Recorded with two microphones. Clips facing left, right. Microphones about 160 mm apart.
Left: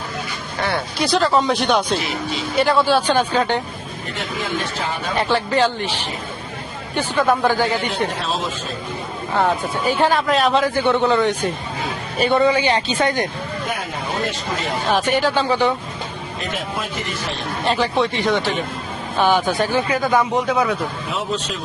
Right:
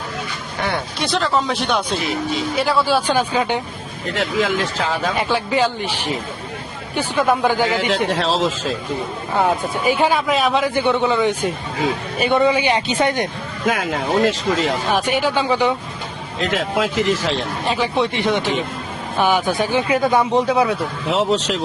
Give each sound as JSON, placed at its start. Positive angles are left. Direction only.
{"t": 0.9, "sound": "speech", "side_deg": 0}
{"t": 4.1, "sound": "speech", "side_deg": -90}
{"t": 5.1, "sound": "speech", "side_deg": -10}
{"t": 7.9, "sound": "a man's voice", "side_deg": -90}
{"t": 9.8, "sound": "speech", "side_deg": -15}
{"t": 10.5, "sound": "speech", "side_deg": -15}
{"t": 12.4, "sound": "speech", "side_deg": -15}
{"t": 14.8, "sound": "speech", "side_deg": -10}
{"t": 16.4, "sound": "speech", "side_deg": -90}
{"t": 17.9, "sound": "speech", "side_deg": -20}
{"t": 21.1, "sound": "speech", "side_deg": -75}